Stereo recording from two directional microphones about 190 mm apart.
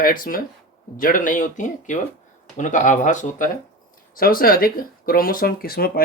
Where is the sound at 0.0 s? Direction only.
50° left (ahead or behind).